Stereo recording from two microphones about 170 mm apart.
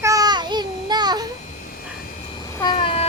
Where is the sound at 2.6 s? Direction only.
30° left (ahead or behind).